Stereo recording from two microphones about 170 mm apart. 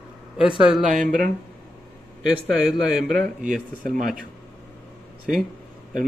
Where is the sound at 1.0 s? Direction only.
55° right (ahead or behind).